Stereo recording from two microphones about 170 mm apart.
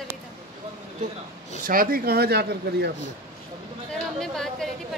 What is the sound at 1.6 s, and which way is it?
Speech, 55° right (ahead or behind).